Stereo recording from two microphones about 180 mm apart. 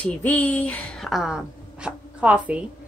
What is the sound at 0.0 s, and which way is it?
A woman's voice, 10° left (ahead or behind).